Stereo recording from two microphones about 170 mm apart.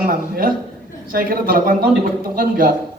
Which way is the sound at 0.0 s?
55° right (ahead or behind).